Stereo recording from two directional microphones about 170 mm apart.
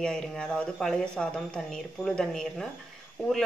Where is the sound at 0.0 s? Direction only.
5° left (ahead or behind).